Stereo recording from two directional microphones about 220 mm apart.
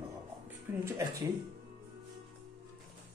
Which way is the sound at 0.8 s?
15° right (ahead or behind).